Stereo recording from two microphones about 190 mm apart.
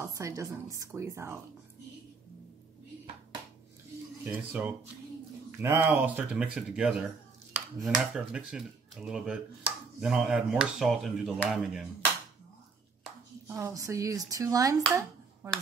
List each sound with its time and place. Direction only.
0.0 s speech: 15° right (ahead or behind)
4.2 s speech: 10° right (ahead or behind)
13.5 s speech: 15° right (ahead or behind)